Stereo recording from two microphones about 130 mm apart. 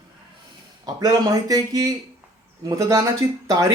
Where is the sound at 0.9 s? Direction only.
30° right (ahead or behind).